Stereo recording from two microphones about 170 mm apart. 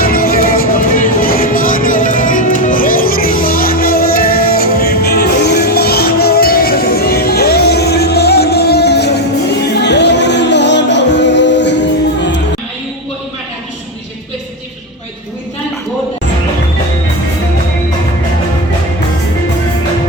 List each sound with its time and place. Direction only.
0.0 s music: 60° left (ahead or behind); by 9.2 s 75° left (ahead or behind)
9.8 s music: 90° left